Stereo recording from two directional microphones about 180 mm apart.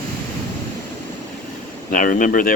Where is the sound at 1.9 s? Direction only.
50° left (ahead or behind).